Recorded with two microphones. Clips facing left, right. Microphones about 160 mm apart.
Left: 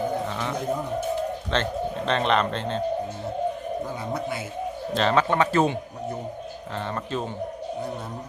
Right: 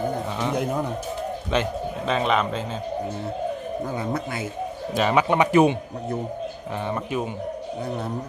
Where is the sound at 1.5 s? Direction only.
10° right (ahead or behind).